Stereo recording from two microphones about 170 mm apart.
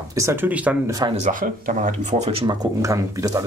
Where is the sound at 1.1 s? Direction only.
45° right (ahead or behind).